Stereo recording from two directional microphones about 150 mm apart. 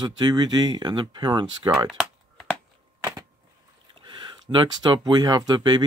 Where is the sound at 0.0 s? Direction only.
30° right (ahead or behind).